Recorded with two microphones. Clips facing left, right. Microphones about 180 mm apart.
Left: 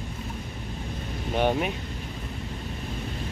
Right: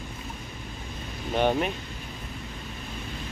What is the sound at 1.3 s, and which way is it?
Speech, 5° left (ahead or behind).